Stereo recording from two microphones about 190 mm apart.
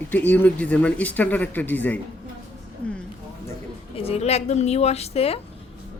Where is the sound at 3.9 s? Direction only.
30° left (ahead or behind).